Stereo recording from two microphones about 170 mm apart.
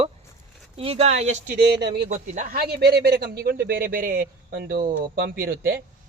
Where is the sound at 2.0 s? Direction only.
45° right (ahead or behind); by 5.7 s 65° right (ahead or behind).